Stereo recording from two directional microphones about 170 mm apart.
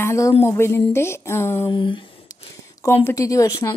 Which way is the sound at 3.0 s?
20° left (ahead or behind).